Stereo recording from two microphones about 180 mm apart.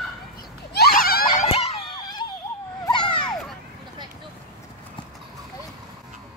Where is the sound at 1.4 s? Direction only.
35° left (ahead or behind).